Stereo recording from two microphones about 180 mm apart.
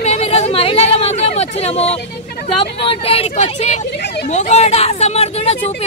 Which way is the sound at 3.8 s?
65° left (ahead or behind).